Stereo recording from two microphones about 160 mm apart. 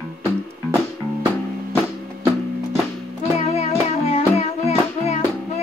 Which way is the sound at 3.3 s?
40° left (ahead or behind).